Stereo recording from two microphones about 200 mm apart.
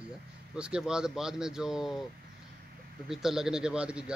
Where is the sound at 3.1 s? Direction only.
Centre (ahead or behind).